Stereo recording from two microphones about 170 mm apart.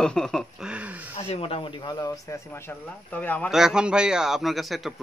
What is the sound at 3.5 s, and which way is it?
Speech, 5° right (ahead or behind).